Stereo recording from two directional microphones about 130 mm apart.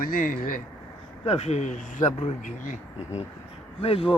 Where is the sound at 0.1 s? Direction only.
90° left.